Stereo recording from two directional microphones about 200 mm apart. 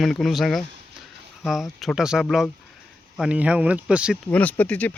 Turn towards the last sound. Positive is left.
turn(degrees=10)  # may be behind; listen again after turning